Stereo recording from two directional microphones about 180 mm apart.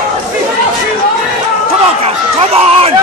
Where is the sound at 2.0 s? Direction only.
35° right (ahead or behind).